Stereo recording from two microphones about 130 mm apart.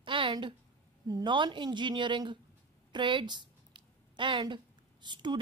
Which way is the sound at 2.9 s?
35° right (ahead or behind).